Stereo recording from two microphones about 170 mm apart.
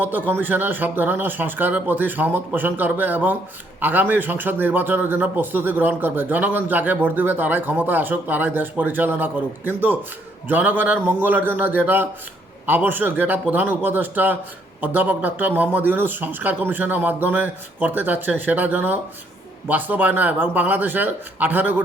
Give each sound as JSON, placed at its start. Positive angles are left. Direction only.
{"t": 0.0, "sound": "a man's voice", "side_deg": -10}